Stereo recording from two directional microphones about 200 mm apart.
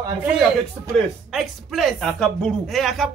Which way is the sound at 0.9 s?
Centre (ahead or behind).